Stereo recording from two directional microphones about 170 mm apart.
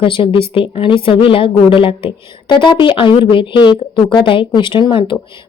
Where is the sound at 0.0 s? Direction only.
30° left (ahead or behind).